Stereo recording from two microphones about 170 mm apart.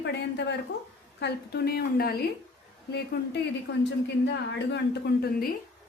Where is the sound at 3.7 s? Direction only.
90° left.